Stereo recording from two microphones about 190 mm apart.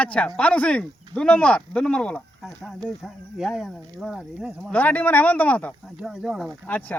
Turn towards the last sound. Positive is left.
turn(degrees=10)  # may be behind; listen again after turning